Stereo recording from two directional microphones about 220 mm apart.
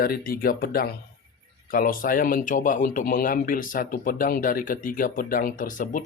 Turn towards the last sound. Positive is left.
turn(degrees=35)  # may be behind; listen again after turning